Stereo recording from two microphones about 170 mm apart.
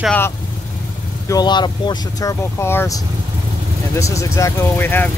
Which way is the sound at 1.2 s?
25° left (ahead or behind).